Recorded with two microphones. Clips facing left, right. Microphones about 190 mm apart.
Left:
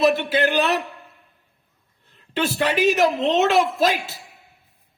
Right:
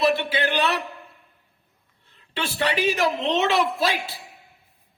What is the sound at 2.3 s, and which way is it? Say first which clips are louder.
A man's voice: left 4 dB; 45° left (ahead or behind).